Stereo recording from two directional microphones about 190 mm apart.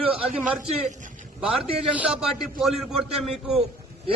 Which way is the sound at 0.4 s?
5° right (ahead or behind).